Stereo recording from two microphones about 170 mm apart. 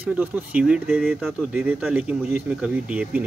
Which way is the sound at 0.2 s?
5° right (ahead or behind).